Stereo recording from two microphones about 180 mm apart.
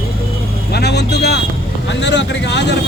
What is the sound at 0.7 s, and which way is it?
Speech, 70° left (ahead or behind).